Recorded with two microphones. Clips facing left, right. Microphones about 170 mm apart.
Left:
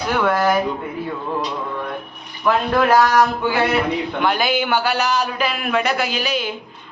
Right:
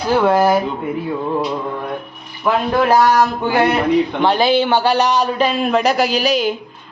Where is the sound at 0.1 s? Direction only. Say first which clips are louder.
Right 5 dB; 25° right (ahead or behind).